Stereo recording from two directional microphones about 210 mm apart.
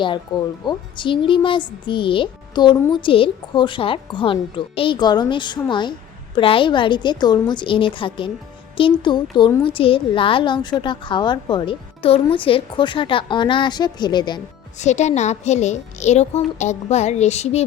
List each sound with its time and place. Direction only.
0.6 s a child's voice: 20° left (ahead or behind)
14.8 s a child's voice: 35° left (ahead or behind)